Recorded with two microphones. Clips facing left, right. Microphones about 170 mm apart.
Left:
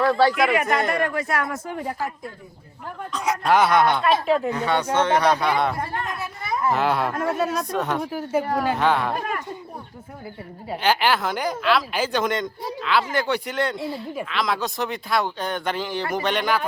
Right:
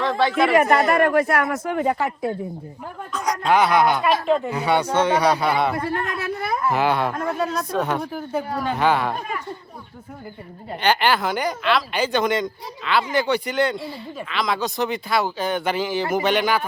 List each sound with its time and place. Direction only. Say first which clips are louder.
0.0 s speech: left 2 dB; 5° left (ahead or behind)
0.7 s speech: right 5 dB; 60° right (ahead or behind)
3.1 s speech: even; centre (ahead or behind)
6.1 s speech: right 4 dB; 70° right (ahead or behind)
6.7 s speech: right 1 dB; centre (ahead or behind)
10.7 s speech: right 1 dB; 5° left (ahead or behind)